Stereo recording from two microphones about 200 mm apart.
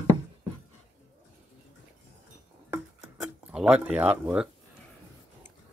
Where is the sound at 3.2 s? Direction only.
5° right (ahead or behind).